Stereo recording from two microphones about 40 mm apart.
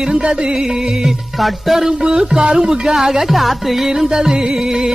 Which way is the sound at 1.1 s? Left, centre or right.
Centre.